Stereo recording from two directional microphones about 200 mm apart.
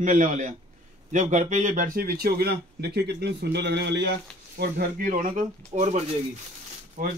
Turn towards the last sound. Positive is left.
turn(degrees=-40)  # may be behind; listen again after turning